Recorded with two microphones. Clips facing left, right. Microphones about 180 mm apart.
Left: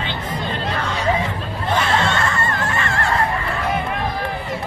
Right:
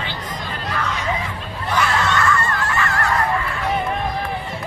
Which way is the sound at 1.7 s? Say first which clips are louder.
Left 1 dB; 25° left (ahead or behind).